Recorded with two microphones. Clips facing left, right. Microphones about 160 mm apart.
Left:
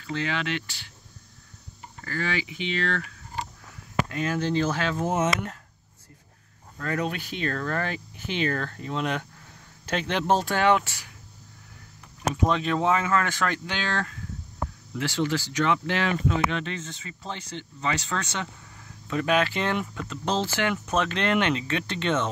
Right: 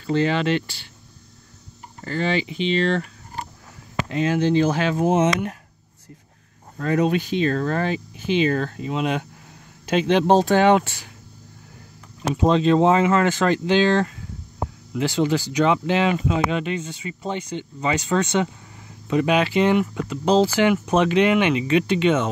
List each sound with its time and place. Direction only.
0.0 s speech: 35° right (ahead or behind)
2.0 s speech: 25° right (ahead or behind)
4.1 s speech: 20° right (ahead or behind)
6.8 s speech: 20° right (ahead or behind)
12.2 s speech: 30° right (ahead or behind); by 22.3 s 10° right (ahead or behind)